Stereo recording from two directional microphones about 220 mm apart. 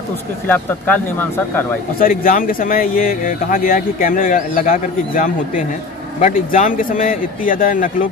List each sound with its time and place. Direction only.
0.5 s speech: 10° left (ahead or behind)
2.0 s speech: 40° left (ahead or behind)